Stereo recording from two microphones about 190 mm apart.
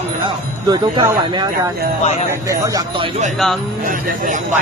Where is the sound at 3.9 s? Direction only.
45° right (ahead or behind).